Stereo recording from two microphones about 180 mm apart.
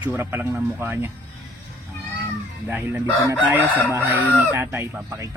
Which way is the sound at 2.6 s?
10° right (ahead or behind).